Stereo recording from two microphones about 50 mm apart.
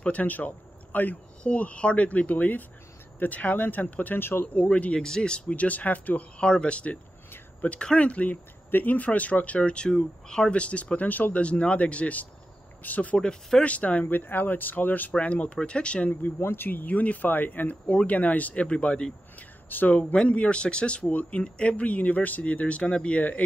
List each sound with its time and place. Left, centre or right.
0.0 s speech: left
4.6 s speech: left
5.5 s speech: left
8.6 s speech: left
11.4 s speech: left
13.2 s speech: centre
13.7 s speech: left
14.0 s speech: left
16.1 s speech: left
19.3 s a sound: left
20.2 s speech: left